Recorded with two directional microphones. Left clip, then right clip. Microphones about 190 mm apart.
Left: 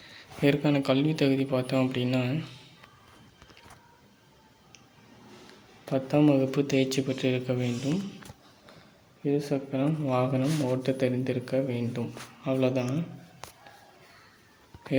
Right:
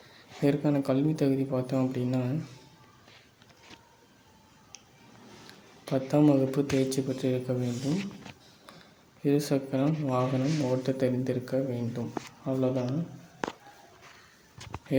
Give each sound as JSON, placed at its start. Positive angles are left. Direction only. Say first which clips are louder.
{"t": 0.2, "sound": "speech", "louder": "left 2 dB", "side_deg": 0}
{"t": 5.8, "sound": "speech", "louder": "even", "side_deg": -5}
{"t": 9.2, "sound": "speech", "louder": "right 1 dB", "side_deg": -20}
{"t": 9.8, "sound": "speech", "louder": "left 1 dB", "side_deg": 0}